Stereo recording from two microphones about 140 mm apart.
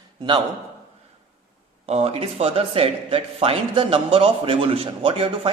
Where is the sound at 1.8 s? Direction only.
45° right (ahead or behind).